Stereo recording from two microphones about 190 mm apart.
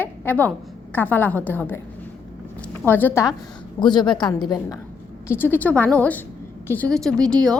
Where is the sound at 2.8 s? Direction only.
10° left (ahead or behind).